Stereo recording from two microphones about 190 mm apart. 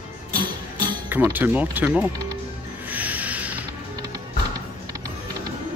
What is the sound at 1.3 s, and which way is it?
Speech, 10° right (ahead or behind).